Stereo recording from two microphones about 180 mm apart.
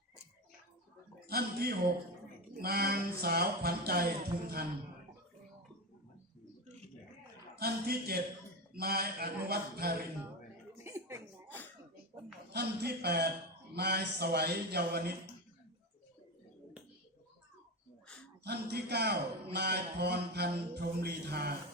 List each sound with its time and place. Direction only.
1.3 s a man's voice: 60° right (ahead or behind)
2.6 s music: 60° right (ahead or behind)
7.5 s music: 60° right (ahead or behind)
10.8 s a sound: 15° right (ahead or behind)
11.4 s a sound: 10° left (ahead or behind)
12.5 s music: 65° right (ahead or behind)
18.4 s music: 65° right (ahead or behind)